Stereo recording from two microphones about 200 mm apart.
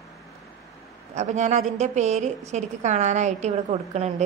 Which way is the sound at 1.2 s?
35° right (ahead or behind).